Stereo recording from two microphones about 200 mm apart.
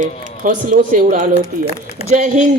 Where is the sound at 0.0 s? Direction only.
40° right (ahead or behind).